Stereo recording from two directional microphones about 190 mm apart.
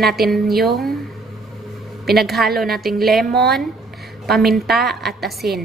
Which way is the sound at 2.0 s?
55° right (ahead or behind).